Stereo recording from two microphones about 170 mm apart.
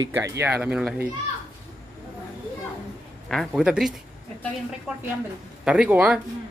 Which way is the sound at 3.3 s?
Centre (ahead or behind).